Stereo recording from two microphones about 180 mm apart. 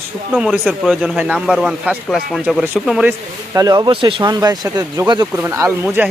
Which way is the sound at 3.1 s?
20° right (ahead or behind).